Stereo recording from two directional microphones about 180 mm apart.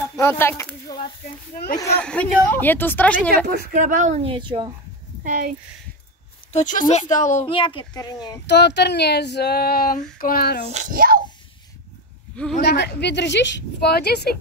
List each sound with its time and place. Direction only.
0.2 s a sound: 15° left (ahead or behind)
1.8 s speech: 10° left (ahead or behind)
3.4 s speech: 60° right (ahead or behind); by 4.7 s 25° right (ahead or behind)
5.2 s speech: 45° right (ahead or behind)
6.5 s a woman's voice: 45° left (ahead or behind)
7.4 s a child's voice: 25° left (ahead or behind)
8.5 s speech: 70° left (ahead or behind)
10.7 s speech: 45° right (ahead or behind)
12.5 s speech: 65° left (ahead or behind)